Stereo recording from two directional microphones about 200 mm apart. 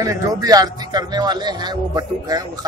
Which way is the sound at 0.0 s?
20° right (ahead or behind).